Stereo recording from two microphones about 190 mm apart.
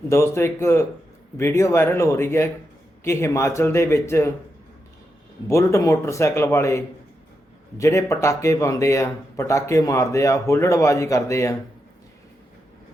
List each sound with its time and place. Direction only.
0.1 s speech: 15° left (ahead or behind)
5.5 s speech: 15° left (ahead or behind)